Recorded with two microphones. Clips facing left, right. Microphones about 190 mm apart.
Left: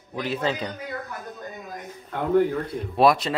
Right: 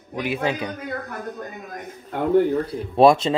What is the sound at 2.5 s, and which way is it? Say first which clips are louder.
Speech: right 4 dB; 25° right (ahead or behind).